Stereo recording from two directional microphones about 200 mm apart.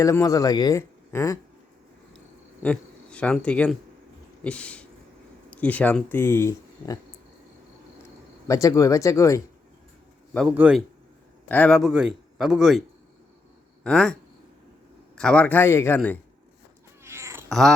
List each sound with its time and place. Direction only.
0.0 s speech: 15° left (ahead or behind)
2.1 s a sound: 5° left (ahead or behind)
5.5 s speech: 5° left (ahead or behind)
8.0 s speech: 15° left (ahead or behind)
10.3 s a man's voice: 5° right (ahead or behind)
11.4 s a man's voice: 5° left (ahead or behind)
13.8 s a man's voice: 5° left (ahead or behind)
17.0 s cat: 15° right (ahead or behind)
17.5 s a man's voice: centre (ahead or behind)